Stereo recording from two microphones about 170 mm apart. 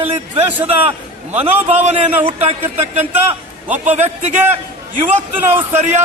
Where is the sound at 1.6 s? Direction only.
40° right (ahead or behind).